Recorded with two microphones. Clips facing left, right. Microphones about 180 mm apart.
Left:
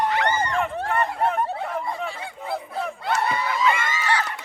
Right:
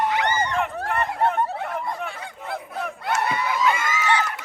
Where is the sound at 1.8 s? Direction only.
Centre (ahead or behind).